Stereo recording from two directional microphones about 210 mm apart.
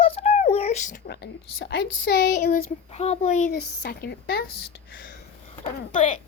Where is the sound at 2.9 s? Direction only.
30° left (ahead or behind).